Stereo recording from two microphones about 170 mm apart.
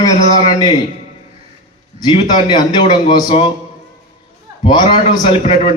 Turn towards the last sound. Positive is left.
turn(degrees=35)  # may be behind; listen again after turning